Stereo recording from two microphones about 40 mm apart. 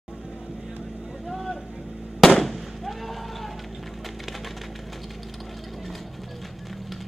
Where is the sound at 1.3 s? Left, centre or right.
Centre.